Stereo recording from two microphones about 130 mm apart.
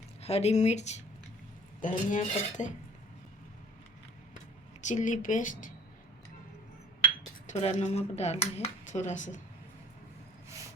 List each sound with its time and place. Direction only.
0.2 s speech: 55° left (ahead or behind)
1.8 s speech: 80° left
4.8 s speech: 70° left (ahead or behind); by 5.7 s 85° left
7.4 s speech: 65° left (ahead or behind)